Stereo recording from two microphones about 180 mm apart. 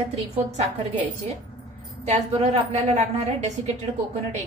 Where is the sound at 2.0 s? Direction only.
35° right (ahead or behind).